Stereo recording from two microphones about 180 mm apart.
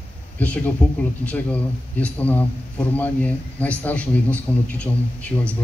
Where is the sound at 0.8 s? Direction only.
5° left (ahead or behind).